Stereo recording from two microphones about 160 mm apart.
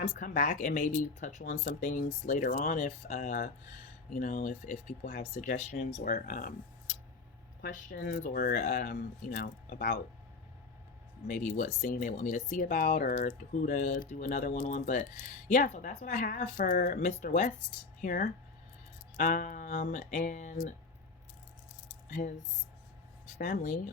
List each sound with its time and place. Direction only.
0.0 s speech: 50° left (ahead or behind)
8.2 s speech: 65° left (ahead or behind)
11.3 s speech: 55° left (ahead or behind)
22.2 s speech: 45° left (ahead or behind)
23.4 s speech: 60° left (ahead or behind)